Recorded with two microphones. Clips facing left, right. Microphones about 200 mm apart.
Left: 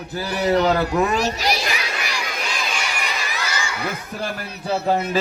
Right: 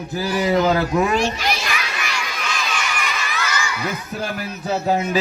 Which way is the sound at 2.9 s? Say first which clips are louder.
Right 1 dB; 35° left (ahead or behind).